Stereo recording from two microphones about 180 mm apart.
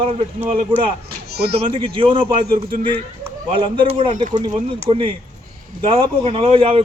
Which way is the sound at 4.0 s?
40° right (ahead or behind).